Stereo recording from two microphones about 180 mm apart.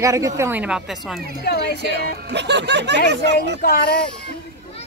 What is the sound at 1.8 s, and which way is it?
Speech, 70° right (ahead or behind).